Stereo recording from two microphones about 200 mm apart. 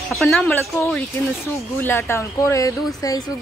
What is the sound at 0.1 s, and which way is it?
Speech, centre (ahead or behind).